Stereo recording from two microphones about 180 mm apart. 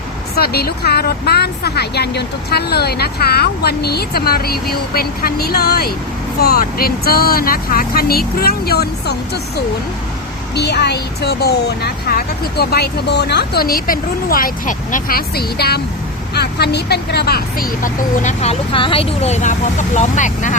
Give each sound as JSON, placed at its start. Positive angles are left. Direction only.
{"t": 0.3, "sound": "a woman's voice", "side_deg": 60}
{"t": 18.7, "sound": "speech", "side_deg": 30}